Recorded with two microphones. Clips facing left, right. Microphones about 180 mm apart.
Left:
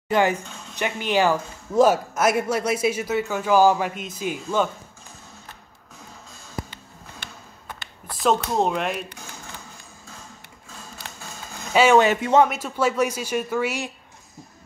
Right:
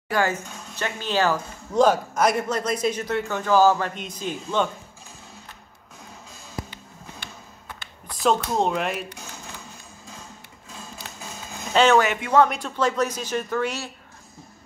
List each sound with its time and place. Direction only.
0.1 s a man's voice: 15° left (ahead or behind)
8.2 s speech: centre (ahead or behind)
11.7 s a man's voice: 10° left (ahead or behind)